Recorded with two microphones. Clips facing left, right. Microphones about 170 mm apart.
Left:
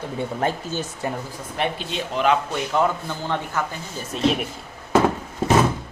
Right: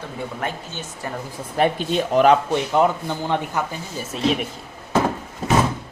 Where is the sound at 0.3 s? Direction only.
35° left (ahead or behind).